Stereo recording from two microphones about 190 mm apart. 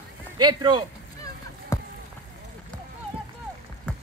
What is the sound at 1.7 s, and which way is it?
Run, 15° left (ahead or behind).